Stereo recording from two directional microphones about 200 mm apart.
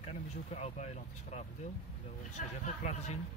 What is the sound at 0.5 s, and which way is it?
Speech, 35° left (ahead or behind).